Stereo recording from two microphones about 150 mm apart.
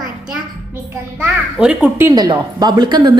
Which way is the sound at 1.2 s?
5° right (ahead or behind).